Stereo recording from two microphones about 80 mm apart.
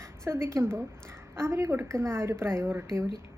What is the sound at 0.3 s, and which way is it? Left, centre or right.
A woman's voice, right.